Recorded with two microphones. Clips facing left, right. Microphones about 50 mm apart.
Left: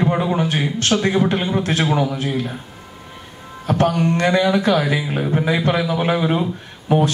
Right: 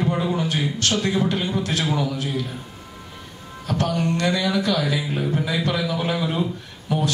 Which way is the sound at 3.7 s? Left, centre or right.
Left.